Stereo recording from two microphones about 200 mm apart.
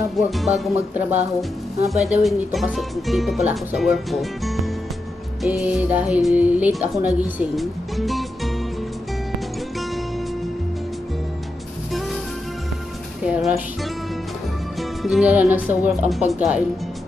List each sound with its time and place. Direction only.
0.3 s speech: centre (ahead or behind)
5.4 s music: 5° right (ahead or behind)
7.0 s speech: 10° right (ahead or behind)
13.2 s speech: 5° right (ahead or behind)
14.8 s speech: centre (ahead or behind)